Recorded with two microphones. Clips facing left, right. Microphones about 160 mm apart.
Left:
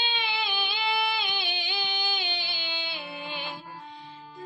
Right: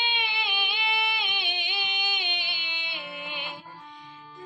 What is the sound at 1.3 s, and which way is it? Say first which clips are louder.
Music: left 1 dB; 15° right (ahead or behind).